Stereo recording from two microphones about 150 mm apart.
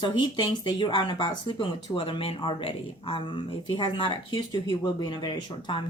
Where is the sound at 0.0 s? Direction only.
30° left (ahead or behind).